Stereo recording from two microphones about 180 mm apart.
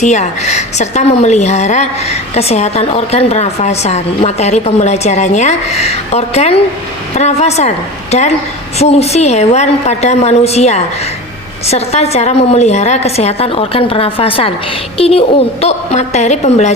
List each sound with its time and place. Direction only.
0.0 s a woman's voice: 40° left (ahead or behind)